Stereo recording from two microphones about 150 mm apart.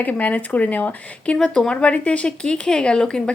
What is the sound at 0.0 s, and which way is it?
Speech, 10° left (ahead or behind).